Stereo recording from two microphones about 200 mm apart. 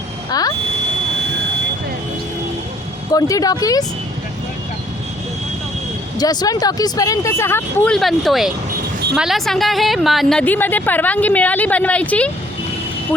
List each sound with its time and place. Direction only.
0.3 s buzzer: 20° left (ahead or behind)
3.1 s a woman's voice: 15° left (ahead or behind)
6.1 s a woman's voice: 20° left (ahead or behind)